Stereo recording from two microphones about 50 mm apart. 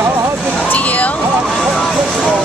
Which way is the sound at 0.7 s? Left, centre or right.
Left.